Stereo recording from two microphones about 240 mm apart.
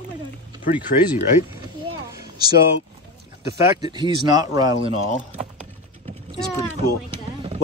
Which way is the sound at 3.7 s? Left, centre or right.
Centre.